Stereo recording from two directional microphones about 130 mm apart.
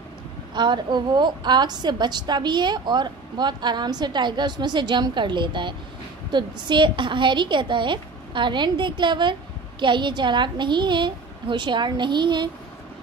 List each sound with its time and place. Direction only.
0.6 s a woman's voice: 35° right (ahead or behind)